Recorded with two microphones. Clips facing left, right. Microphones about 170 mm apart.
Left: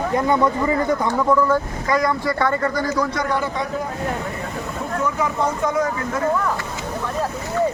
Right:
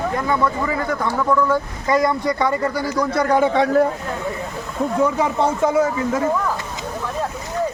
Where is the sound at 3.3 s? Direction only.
75° right (ahead or behind).